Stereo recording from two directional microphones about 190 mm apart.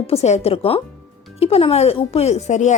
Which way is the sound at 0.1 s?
35° left (ahead or behind).